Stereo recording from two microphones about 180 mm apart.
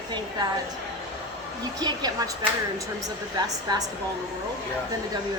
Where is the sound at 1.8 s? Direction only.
20° right (ahead or behind).